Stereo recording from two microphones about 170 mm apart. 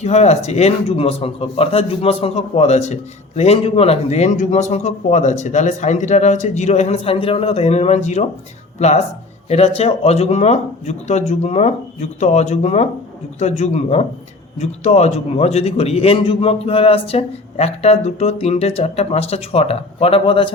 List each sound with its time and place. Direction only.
0.0 s a man's voice: 40° left (ahead or behind)